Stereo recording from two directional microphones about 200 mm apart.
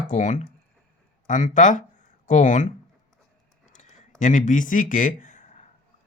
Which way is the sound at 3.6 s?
35° left (ahead or behind).